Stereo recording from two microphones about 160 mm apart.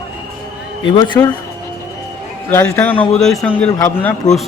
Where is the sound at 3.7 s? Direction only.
15° left (ahead or behind).